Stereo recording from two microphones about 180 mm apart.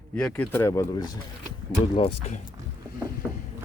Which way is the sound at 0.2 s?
5° left (ahead or behind).